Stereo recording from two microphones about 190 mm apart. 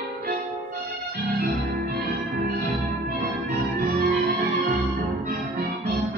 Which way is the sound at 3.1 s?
55° right (ahead or behind).